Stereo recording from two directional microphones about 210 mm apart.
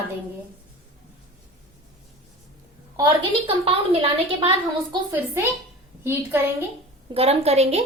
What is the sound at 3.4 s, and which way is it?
Speech, 25° right (ahead or behind).